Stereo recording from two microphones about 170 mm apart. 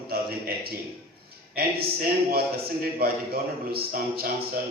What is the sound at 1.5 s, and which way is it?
A man's voice, 65° right (ahead or behind).